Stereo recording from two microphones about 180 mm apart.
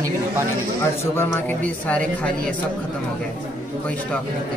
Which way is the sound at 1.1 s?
10° left (ahead or behind).